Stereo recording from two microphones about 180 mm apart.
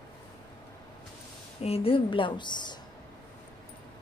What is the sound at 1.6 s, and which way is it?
A woman's voice, 30° left (ahead or behind).